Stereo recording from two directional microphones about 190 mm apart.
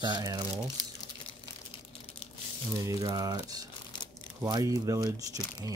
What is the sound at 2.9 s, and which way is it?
Speech, 20° right (ahead or behind).